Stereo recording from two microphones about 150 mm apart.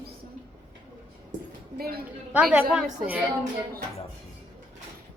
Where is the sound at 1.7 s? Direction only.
90° right.